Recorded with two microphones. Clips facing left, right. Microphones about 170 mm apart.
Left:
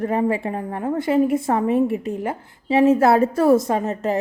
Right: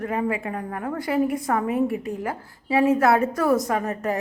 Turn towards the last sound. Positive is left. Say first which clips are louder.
# left 3 dB
turn(degrees=25)  # may be behind; listen again after turning